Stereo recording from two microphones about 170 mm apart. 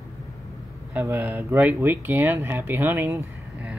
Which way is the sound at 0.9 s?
10° right (ahead or behind).